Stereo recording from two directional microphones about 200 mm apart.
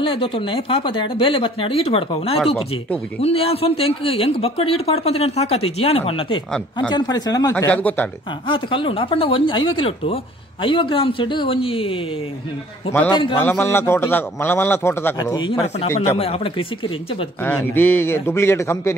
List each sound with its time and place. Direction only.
0.0 s speech: 25° left (ahead or behind)
2.3 s speech: centre (ahead or behind)
3.2 s speech: 30° left (ahead or behind)
7.5 s a man's voice: 5° left (ahead or behind)
8.5 s speech: 25° left (ahead or behind)
13.1 s speech: 25° left (ahead or behind)
13.4 s a man's voice: 10° left (ahead or behind); by 16.6 s 30° left (ahead or behind)
17.4 s a man's voice: 10° left (ahead or behind)